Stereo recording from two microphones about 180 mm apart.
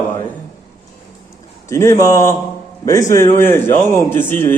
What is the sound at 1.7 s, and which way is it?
Speech, 15° left (ahead or behind).